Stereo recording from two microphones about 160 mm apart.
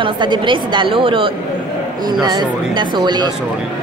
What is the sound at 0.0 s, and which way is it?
A woman's voice, 30° right (ahead or behind).